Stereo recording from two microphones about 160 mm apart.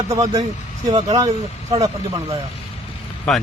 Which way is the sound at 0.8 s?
25° right (ahead or behind).